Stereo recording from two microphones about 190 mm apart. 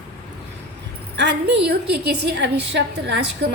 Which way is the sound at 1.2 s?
60° right (ahead or behind).